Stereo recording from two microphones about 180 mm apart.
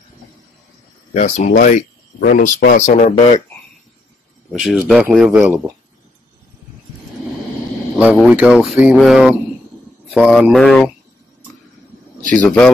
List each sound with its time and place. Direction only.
1.1 s speech: 40° left (ahead or behind)
4.5 s speech: centre (ahead or behind)
8.2 s speech: 5° right (ahead or behind)
12.3 s speech: 5° left (ahead or behind)